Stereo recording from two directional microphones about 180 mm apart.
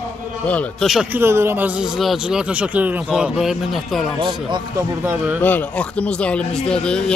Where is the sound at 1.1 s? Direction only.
15° right (ahead or behind).